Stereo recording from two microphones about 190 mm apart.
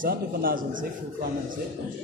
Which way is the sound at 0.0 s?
50° right (ahead or behind).